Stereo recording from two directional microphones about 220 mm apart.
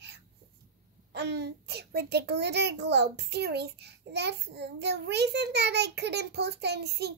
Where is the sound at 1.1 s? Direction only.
50° right (ahead or behind).